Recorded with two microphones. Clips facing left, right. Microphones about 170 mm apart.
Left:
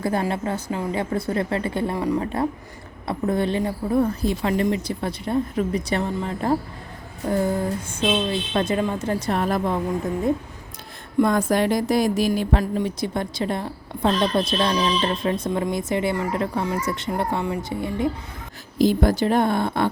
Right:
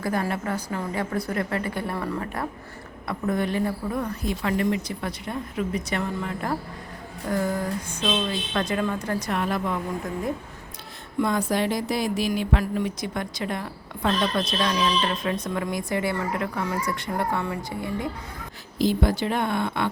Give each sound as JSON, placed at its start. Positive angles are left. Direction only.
{"t": 0.0, "sound": "speech", "side_deg": 25}
{"t": 11.2, "sound": "speech", "side_deg": 50}
{"t": 18.8, "sound": "speech", "side_deg": 45}